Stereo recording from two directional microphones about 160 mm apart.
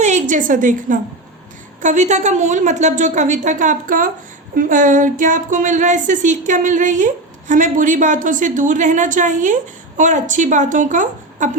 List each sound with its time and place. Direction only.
0.0 s a woman's voice: 50° right (ahead or behind)